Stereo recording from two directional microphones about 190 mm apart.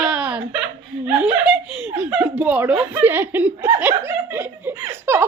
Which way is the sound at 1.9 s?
5° right (ahead or behind).